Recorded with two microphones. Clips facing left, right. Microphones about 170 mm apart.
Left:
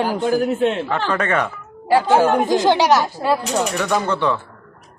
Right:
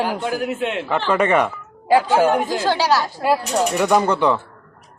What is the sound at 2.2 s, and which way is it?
Speech, 20° left (ahead or behind).